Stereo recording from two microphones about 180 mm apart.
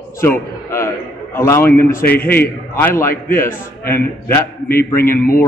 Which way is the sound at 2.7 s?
15° left (ahead or behind).